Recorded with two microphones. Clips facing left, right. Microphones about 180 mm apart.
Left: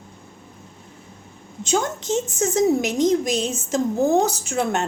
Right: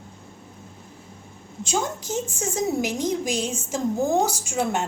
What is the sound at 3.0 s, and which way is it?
A woman's voice, 10° right (ahead or behind).